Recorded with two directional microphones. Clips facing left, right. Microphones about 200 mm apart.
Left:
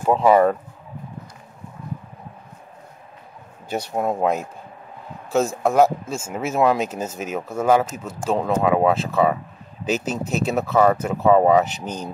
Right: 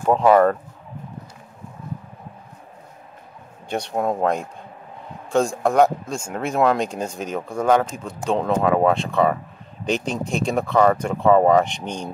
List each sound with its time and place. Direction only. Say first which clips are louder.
0.0 s speech: even; 5° left (ahead or behind)
3.6 s speech: even; 5° left (ahead or behind)